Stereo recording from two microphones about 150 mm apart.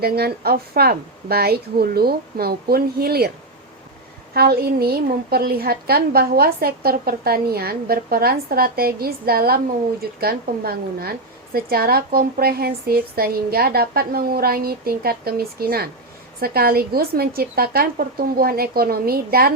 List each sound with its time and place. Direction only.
0.0 s a woman's voice: 90° right
4.4 s a woman's voice: 90° right